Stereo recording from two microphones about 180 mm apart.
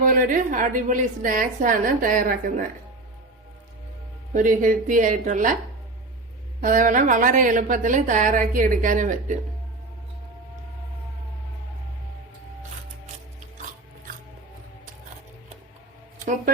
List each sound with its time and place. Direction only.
0.0 s a woman's voice: 50° right (ahead or behind)
4.4 s a woman's voice: 50° right (ahead or behind)
6.6 s a woman's voice: 45° right (ahead or behind)